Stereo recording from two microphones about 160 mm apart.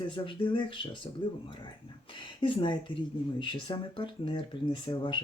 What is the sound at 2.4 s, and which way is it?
Speech, 30° left (ahead or behind).